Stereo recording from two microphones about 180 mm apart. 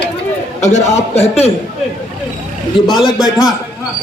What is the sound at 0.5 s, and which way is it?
Speech, 40° left (ahead or behind).